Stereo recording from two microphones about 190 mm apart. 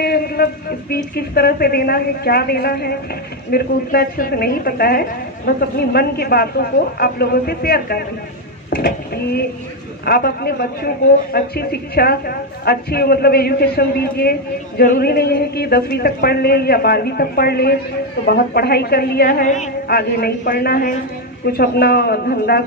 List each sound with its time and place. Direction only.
0.0 s a woman's voice: 55° left (ahead or behind)
20.0 s a woman's voice: 55° left (ahead or behind)